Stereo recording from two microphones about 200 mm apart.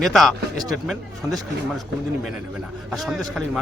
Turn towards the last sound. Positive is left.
turn(degrees=0)  # may be behind; listen again after turning